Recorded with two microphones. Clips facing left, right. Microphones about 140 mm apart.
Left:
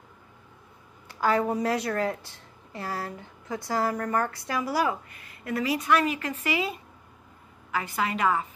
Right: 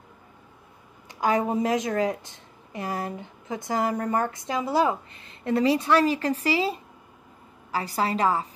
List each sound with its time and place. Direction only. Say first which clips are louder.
1.0 s a woman's voice: right 1 dB; 15° right (ahead or behind); by 8.5 s 35° right (ahead or behind)